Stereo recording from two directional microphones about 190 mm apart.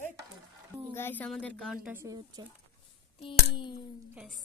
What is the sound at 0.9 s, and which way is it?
Speech, 10° left (ahead or behind).